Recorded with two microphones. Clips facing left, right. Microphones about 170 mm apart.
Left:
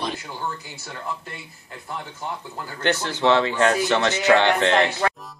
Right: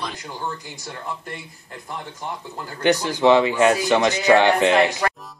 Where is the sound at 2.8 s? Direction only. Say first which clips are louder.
Right 4 dB; 15° right (ahead or behind).